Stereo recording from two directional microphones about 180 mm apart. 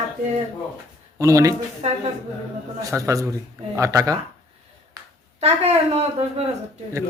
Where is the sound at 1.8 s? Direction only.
40° right (ahead or behind).